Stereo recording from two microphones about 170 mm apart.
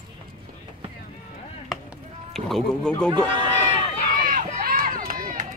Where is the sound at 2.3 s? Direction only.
Centre (ahead or behind).